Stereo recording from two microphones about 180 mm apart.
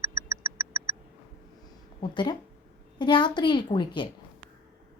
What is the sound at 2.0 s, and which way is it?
A woman's voice, 25° left (ahead or behind).